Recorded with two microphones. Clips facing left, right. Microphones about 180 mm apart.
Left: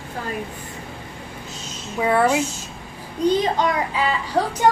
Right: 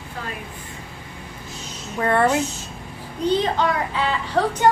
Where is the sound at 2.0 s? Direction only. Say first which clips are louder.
Left 1 dB; 5° left (ahead or behind).